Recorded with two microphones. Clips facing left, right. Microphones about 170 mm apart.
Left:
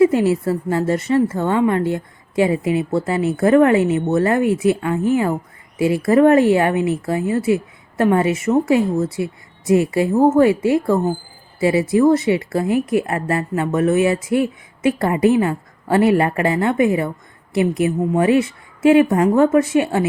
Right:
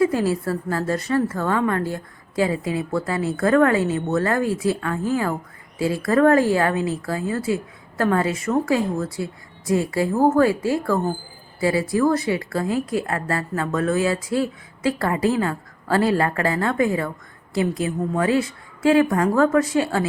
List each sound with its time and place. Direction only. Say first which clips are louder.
0.0 s speech: left 5 dB; 25° left (ahead or behind)